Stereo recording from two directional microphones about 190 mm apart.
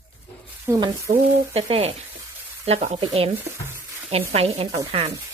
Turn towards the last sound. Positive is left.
turn(degrees=-35)  # may be behind; listen again after turning